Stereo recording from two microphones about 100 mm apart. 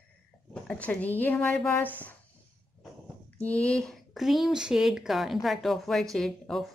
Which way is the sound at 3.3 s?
10° left (ahead or behind).